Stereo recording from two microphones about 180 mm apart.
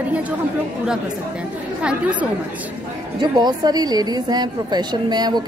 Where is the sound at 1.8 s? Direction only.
5° right (ahead or behind).